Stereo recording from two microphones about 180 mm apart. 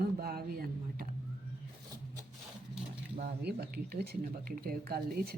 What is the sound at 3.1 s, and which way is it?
Speech, 55° right (ahead or behind).